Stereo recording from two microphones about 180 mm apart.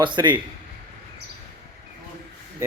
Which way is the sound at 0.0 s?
25° right (ahead or behind).